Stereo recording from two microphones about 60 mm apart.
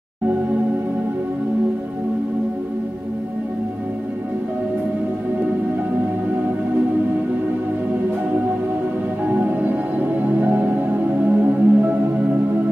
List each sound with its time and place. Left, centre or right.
9.3 s music: right